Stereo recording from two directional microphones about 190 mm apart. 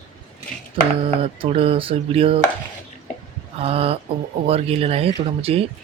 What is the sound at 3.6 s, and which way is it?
Speech, 30° right (ahead or behind).